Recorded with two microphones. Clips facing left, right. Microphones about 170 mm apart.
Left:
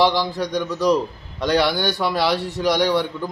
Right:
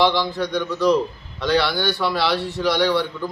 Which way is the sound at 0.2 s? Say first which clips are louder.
Even; 10° left (ahead or behind).